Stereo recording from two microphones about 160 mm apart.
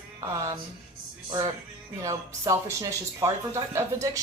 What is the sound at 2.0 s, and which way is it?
A woman's voice, 20° right (ahead or behind).